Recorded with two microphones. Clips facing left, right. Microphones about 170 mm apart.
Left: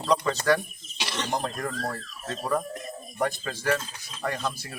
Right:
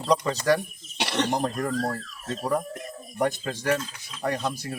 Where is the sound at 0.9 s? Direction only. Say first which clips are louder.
Right 7 dB; 65° right (ahead or behind).